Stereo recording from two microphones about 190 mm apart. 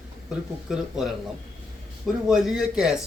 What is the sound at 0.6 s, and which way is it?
Speech, 5° right (ahead or behind).